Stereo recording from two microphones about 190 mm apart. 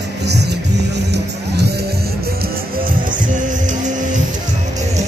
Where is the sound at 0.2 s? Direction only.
60° right (ahead or behind).